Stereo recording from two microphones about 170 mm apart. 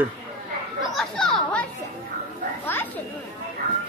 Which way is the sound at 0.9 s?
5° left (ahead or behind).